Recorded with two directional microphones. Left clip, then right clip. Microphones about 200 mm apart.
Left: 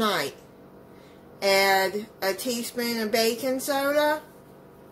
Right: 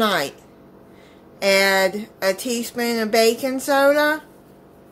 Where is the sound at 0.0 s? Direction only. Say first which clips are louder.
Right 5 dB; 30° right (ahead or behind).